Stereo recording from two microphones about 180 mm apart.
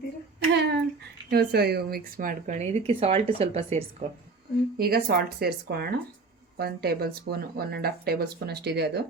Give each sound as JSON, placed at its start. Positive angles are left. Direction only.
{"t": 0.3, "sound": "a sound", "side_deg": -70}
{"t": 1.3, "sound": "a woman's voice", "side_deg": -60}
{"t": 4.8, "sound": "speech", "side_deg": -55}